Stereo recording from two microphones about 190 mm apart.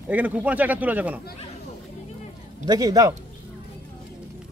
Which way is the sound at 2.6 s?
20° right (ahead or behind).